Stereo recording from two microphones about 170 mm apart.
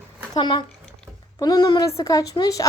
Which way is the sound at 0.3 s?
30° left (ahead or behind).